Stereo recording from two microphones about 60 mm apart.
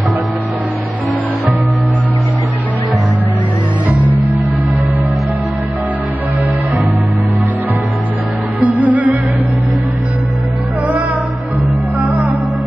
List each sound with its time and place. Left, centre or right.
8.5 s music: right
12.0 s music: right